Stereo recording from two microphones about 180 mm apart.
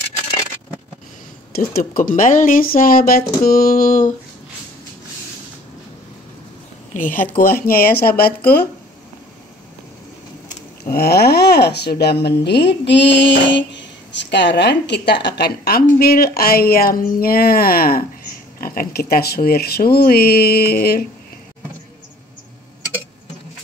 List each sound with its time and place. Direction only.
1.5 s speech: 55° left (ahead or behind)
6.9 s a sound: 45° left (ahead or behind)
7.5 s speech: 55° left (ahead or behind)
10.9 s speech: 60° left (ahead or behind)